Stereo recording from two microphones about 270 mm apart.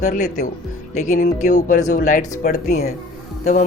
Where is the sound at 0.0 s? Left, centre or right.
Left.